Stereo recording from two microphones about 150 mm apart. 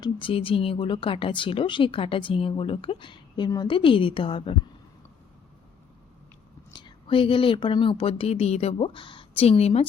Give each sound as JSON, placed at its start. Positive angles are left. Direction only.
{"t": 0.0, "sound": "speech", "side_deg": 35}
{"t": 6.7, "sound": "speech", "side_deg": 35}